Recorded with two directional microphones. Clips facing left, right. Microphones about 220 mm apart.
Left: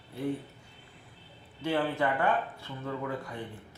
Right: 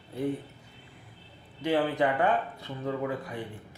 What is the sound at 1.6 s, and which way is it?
Speech, 15° right (ahead or behind).